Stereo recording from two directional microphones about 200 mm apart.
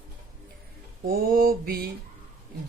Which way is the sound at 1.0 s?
45° right (ahead or behind).